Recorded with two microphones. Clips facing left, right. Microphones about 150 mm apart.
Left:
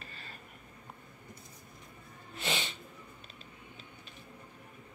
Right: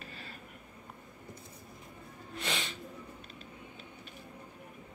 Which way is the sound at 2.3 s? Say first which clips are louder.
Left 1 dB; centre (ahead or behind).